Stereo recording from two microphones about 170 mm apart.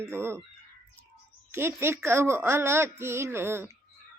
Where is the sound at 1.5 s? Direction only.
15° right (ahead or behind).